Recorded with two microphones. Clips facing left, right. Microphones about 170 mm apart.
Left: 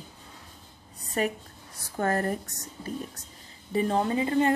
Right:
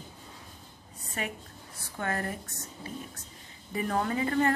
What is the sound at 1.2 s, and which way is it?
Speech, 40° left (ahead or behind).